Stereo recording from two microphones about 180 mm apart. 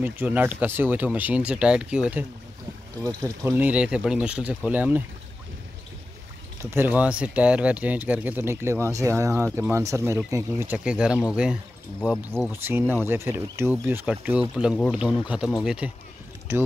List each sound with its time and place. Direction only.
0.0 s speech: 10° right (ahead or behind)
6.6 s speech: 15° right (ahead or behind)